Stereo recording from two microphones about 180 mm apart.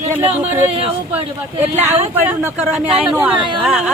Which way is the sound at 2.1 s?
10° right (ahead or behind).